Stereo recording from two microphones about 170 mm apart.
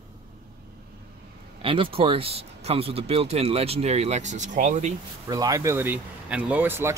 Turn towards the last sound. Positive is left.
turn(degrees=-10)  # may be behind; listen again after turning